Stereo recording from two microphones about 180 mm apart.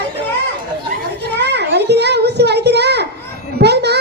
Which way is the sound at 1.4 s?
70° right (ahead or behind).